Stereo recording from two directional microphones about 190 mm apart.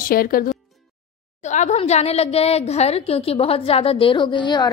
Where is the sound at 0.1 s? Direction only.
50° left (ahead or behind).